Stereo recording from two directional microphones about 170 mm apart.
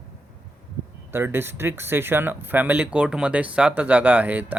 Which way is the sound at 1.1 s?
15° right (ahead or behind).